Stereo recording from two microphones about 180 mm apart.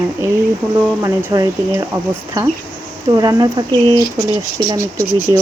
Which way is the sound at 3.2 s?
20° right (ahead or behind).